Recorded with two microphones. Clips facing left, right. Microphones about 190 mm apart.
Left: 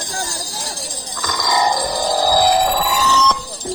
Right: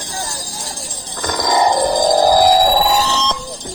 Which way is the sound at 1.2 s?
55° right (ahead or behind).